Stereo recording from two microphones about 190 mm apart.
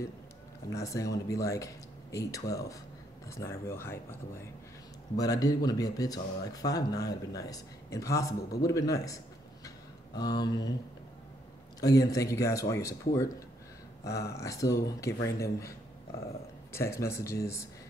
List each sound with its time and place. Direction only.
0.7 s speech: 15° left (ahead or behind)
11.8 s speech: 20° left (ahead or behind)
14.0 s speech: 55° left (ahead or behind)
14.3 s speech: 15° left (ahead or behind)
16.7 s speech: 15° left (ahead or behind)